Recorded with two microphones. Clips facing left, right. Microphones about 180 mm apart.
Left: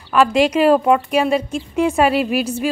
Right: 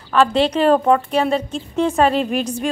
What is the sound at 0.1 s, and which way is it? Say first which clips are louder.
A woman's voice: left 1 dB; 10° left (ahead or behind).